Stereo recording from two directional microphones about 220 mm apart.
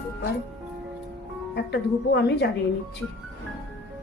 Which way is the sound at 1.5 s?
50° left (ahead or behind).